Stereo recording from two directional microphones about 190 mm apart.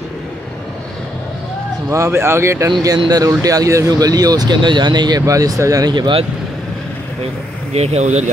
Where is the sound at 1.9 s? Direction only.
15° right (ahead or behind).